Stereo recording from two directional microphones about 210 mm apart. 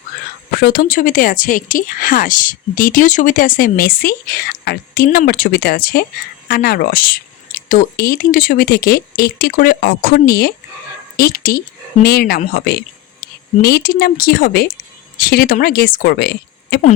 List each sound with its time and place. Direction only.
0.5 s speech: 45° left (ahead or behind)